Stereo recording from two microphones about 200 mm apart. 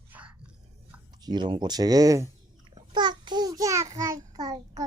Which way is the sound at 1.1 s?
20° right (ahead or behind).